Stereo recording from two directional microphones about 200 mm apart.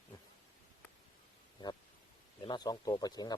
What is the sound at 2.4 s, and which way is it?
Speech, 20° left (ahead or behind).